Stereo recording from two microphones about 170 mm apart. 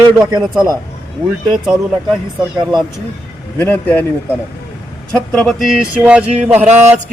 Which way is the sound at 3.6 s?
10° left (ahead or behind).